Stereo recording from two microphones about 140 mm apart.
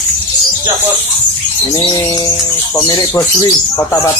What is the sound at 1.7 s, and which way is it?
Speech, 25° left (ahead or behind).